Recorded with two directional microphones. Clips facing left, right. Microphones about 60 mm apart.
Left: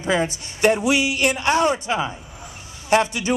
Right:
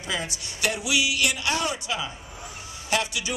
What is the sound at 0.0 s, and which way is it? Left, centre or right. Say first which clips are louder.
A man's voice: left 9 dB; left.